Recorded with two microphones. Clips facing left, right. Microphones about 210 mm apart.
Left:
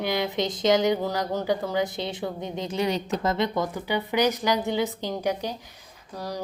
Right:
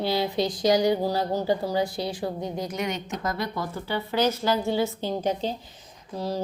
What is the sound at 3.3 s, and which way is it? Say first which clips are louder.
A woman's voice: left 4 dB; 20° left (ahead or behind).